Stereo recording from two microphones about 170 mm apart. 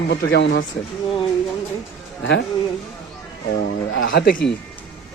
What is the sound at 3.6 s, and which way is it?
Speech, 75° left (ahead or behind).